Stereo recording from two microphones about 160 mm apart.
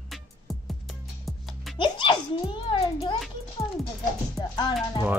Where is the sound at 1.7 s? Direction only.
30° left (ahead or behind).